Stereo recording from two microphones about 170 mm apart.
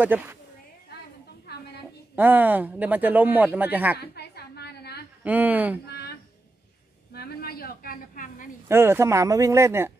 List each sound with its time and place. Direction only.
0.0 s speech: 10° right (ahead or behind)
2.1 s speech: 10° right (ahead or behind)
4.0 s a sound: 70° left (ahead or behind)
5.2 s speech: 10° right (ahead or behind)
5.9 s a sound: 70° left (ahead or behind); by 8.5 s 55° left (ahead or behind)
8.6 s speech: 15° right (ahead or behind)